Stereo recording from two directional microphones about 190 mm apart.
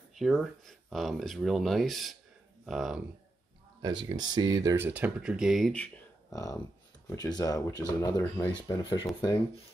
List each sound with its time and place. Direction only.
0.1 s speech: centre (ahead or behind)
4.0 s speech: 20° right (ahead or behind); by 5.9 s 5° left (ahead or behind)
6.3 s speech: 15° left (ahead or behind)